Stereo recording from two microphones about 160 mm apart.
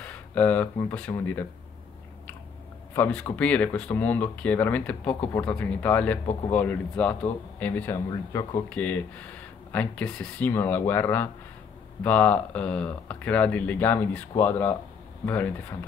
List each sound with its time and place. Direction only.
0.0 s speech: 10° left (ahead or behind)
2.9 s speech: 10° left (ahead or behind)